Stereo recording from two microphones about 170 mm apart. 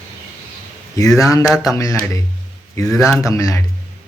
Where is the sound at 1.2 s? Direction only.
20° left (ahead or behind).